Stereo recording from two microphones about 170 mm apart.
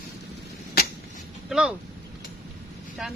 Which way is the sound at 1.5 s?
5° right (ahead or behind).